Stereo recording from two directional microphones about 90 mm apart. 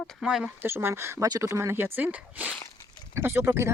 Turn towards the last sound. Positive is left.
turn(degrees=-30)  # may be behind; listen again after turning